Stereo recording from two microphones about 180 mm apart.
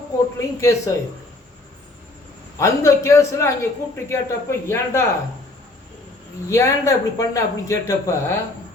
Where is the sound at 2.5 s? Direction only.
15° left (ahead or behind).